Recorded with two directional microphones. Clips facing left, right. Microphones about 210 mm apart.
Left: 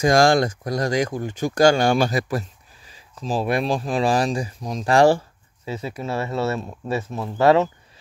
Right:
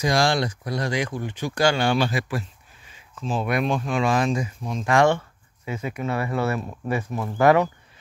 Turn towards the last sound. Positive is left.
turn(degrees=25)  # may be behind; listen again after turning